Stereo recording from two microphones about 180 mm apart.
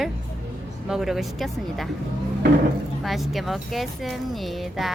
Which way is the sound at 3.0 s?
Centre (ahead or behind).